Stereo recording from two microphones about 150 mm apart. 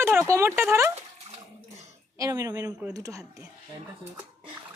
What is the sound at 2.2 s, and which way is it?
Speech, 20° right (ahead or behind).